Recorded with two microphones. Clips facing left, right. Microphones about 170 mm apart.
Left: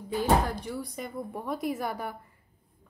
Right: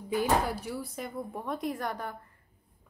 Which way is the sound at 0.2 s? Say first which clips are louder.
Left 3 dB; 10° right (ahead or behind).